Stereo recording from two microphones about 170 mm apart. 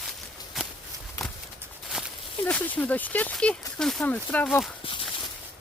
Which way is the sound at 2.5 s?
10° left (ahead or behind).